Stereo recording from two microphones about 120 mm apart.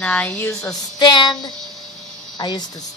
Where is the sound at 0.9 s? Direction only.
40° left (ahead or behind).